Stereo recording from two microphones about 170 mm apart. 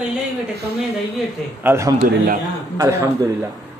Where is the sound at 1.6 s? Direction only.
15° right (ahead or behind).